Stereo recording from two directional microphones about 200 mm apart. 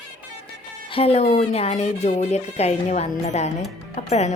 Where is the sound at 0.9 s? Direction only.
30° left (ahead or behind).